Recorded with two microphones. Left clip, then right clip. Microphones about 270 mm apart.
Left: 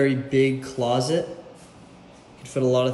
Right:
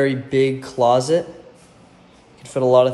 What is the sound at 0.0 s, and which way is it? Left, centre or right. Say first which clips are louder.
Speech: right 3 dB; right.